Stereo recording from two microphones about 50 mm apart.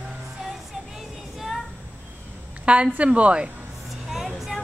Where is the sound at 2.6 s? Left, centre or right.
Right.